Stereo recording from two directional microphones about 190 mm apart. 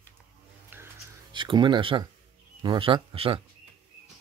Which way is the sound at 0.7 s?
10° right (ahead or behind).